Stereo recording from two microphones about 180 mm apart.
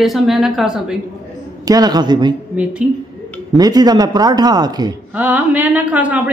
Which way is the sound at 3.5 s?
20° right (ahead or behind).